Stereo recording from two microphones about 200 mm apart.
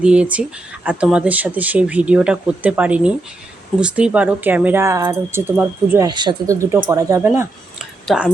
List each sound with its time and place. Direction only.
0.0 s speech: 5° right (ahead or behind)